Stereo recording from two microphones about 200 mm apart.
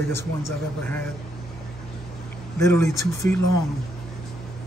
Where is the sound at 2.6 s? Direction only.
15° left (ahead or behind).